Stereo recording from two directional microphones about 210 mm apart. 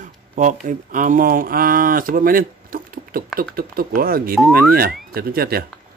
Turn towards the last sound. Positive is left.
turn(degrees=-45)  # may be behind; listen again after turning